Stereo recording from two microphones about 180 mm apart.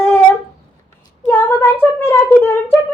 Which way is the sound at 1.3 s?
10° left (ahead or behind).